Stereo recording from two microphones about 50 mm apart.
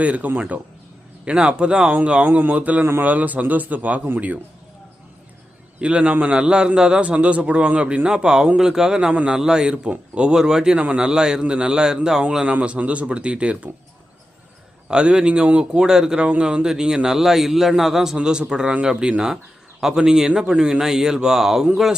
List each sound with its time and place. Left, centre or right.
0.0 s a man's voice: right
2.3 s a man's voice: right
5.8 s a man's voice: right
12.5 s a man's voice: right
14.8 s a man's voice: centre
15.8 s a man's voice: centre